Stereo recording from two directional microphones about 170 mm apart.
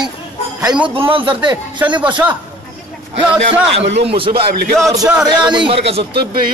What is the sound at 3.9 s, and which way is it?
Speech, 85° right.